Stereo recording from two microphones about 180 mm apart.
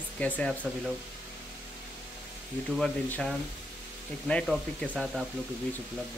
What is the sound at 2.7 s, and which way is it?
Speech, centre (ahead or behind).